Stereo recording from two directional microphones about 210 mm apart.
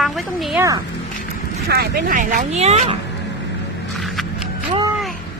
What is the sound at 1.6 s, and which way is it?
Speech, 50° right (ahead or behind).